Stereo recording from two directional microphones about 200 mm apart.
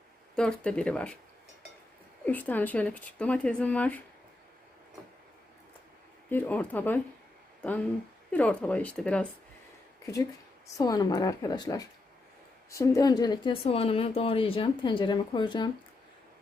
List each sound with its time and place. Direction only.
0.3 s speech: 5° left (ahead or behind)
2.2 s speech: 10° left (ahead or behind)
6.3 s speech: 10° left (ahead or behind)
8.3 s speech: 5° left (ahead or behind)
10.8 s speech: 20° left (ahead or behind)